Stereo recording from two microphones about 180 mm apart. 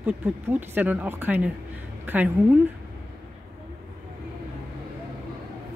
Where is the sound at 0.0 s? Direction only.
10° right (ahead or behind).